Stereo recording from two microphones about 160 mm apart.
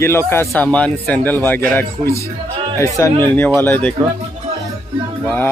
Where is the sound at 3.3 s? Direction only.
10° left (ahead or behind).